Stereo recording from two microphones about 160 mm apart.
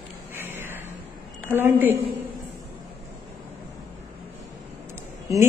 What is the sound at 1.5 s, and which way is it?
Speech, 10° right (ahead or behind).